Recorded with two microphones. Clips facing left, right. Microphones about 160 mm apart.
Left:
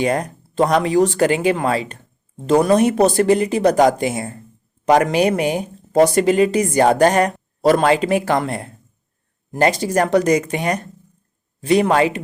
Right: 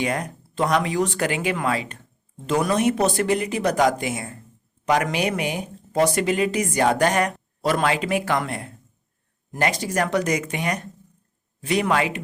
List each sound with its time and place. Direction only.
0.0 s speech: 35° left (ahead or behind)